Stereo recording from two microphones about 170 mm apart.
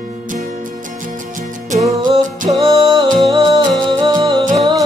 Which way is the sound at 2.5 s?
35° right (ahead or behind).